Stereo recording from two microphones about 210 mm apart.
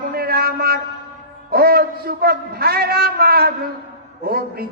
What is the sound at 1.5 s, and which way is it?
A man's voice, 45° right (ahead or behind).